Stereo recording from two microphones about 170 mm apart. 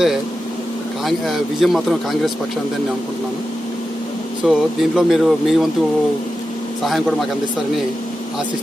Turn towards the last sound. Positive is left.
turn(degrees=0)  # may be behind; listen again after turning